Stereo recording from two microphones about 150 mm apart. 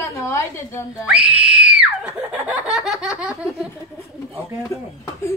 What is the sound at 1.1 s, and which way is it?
Screaming, 5° right (ahead or behind).